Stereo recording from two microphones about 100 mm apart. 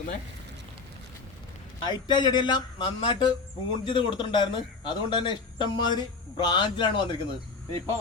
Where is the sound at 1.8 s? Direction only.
45° left (ahead or behind).